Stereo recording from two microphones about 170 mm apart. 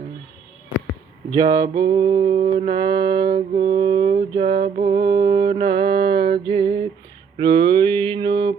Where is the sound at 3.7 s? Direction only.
25° right (ahead or behind).